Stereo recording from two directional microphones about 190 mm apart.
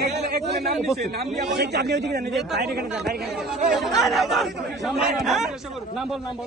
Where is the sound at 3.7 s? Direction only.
Centre (ahead or behind).